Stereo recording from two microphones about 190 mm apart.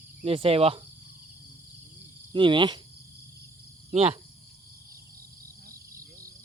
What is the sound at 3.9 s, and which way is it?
Speech, 35° right (ahead or behind).